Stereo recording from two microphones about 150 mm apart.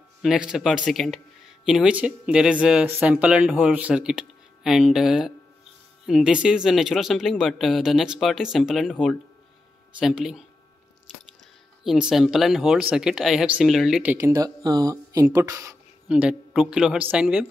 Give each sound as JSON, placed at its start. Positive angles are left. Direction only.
{"t": 0.2, "sound": "speech", "side_deg": -5}
{"t": 11.8, "sound": "speech", "side_deg": -5}
{"t": 14.1, "sound": "speech", "side_deg": -20}
{"t": 16.1, "sound": "speech", "side_deg": -5}